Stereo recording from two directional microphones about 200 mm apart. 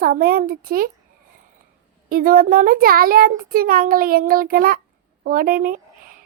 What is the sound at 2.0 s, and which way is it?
A child's voice, 45° right (ahead or behind).